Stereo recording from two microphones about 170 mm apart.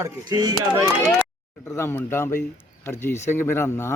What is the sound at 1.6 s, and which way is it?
A man's voice, 15° left (ahead or behind).